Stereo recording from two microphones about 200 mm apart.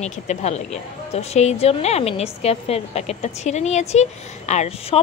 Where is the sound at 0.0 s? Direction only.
35° left (ahead or behind).